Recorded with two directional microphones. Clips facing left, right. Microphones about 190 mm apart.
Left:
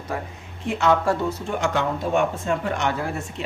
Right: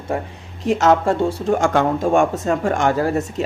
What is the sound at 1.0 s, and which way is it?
Speech, 25° right (ahead or behind).